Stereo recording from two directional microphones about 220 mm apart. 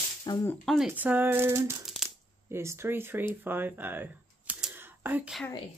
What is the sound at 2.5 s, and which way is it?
Speech, 10° right (ahead or behind).